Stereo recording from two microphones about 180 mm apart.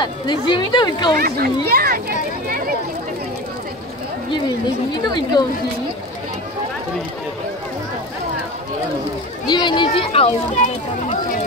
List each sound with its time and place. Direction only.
0.0 s speech: 25° left (ahead or behind)
1.1 s a child's voice: 60° right (ahead or behind)
2.4 s a sound: 55° right (ahead or behind)
4.9 s speech: 25° left (ahead or behind)
9.5 s speech: 25° left (ahead or behind)